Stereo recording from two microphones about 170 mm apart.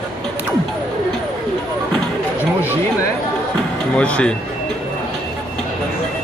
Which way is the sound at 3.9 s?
5° left (ahead or behind).